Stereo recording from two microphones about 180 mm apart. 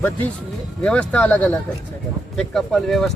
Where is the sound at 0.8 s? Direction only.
5° left (ahead or behind).